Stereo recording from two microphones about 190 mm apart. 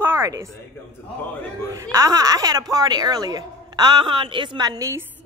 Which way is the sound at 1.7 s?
15° right (ahead or behind).